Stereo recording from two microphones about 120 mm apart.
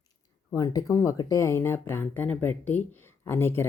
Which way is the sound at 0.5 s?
30° left (ahead or behind).